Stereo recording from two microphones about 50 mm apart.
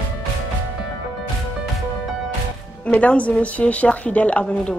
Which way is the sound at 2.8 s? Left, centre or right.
Left.